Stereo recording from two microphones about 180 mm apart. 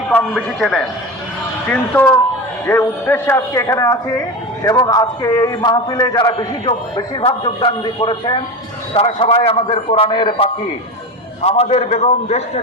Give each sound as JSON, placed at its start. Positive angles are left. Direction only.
{"t": 0.3, "sound": "a man's voice", "side_deg": 0}